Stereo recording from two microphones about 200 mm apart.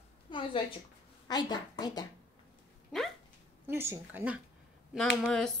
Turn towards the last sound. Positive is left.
turn(degrees=0)  # may be behind; listen again after turning